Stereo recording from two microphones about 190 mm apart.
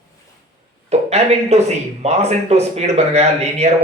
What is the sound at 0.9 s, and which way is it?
Speech, 35° right (ahead or behind).